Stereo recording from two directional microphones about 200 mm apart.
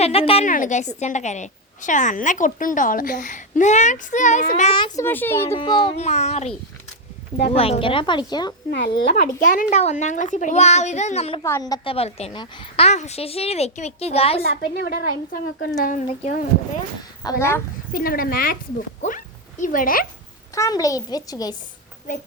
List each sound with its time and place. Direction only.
0.0 s a woman's voice: 30° left (ahead or behind)
4.7 s a woman's voice: 25° left (ahead or behind)
5.0 s a child's voice: 10° left (ahead or behind)
5.5 s a woman's voice: 25° left (ahead or behind)
7.5 s a woman's voice: 30° left (ahead or behind)
8.7 s a woman's voice: 55° left (ahead or behind); by 11.3 s 30° left (ahead or behind)
11.4 s a woman's voice: 15° left (ahead or behind)
11.9 s a woman's voice: 30° left (ahead or behind)
14.4 s a woman's voice: 50° left (ahead or behind)
17.2 s a child's voice: 10° left (ahead or behind)
17.9 s a woman's voice: 45° left (ahead or behind)
20.6 s a child's voice: 15° left (ahead or behind)